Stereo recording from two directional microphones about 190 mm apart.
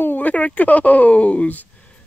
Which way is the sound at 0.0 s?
10° left (ahead or behind).